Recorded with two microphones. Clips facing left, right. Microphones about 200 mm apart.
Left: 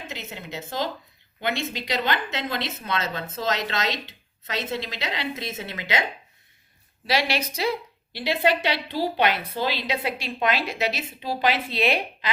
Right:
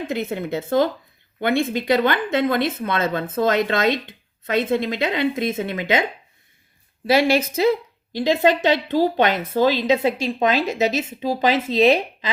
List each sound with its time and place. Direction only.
0.1 s a woman's voice: 55° right (ahead or behind)
7.2 s a woman's voice: 50° right (ahead or behind)